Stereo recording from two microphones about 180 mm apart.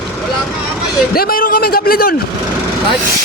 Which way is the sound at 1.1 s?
55° left (ahead or behind).